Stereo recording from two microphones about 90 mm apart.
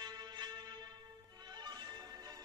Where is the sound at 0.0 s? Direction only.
50° right (ahead or behind).